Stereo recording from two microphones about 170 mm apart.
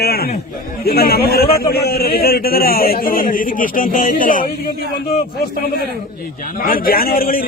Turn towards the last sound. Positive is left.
turn(degrees=60)  # may be behind; listen again after turning